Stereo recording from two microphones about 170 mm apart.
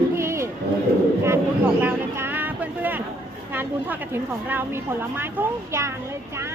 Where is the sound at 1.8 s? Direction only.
10° right (ahead or behind).